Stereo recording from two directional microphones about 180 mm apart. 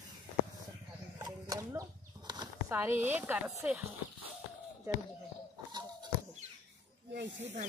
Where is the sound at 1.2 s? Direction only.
20° right (ahead or behind).